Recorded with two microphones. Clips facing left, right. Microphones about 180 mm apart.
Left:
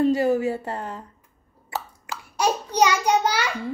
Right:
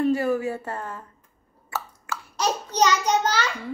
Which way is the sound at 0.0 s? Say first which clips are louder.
Left 3 dB; 25° left (ahead or behind).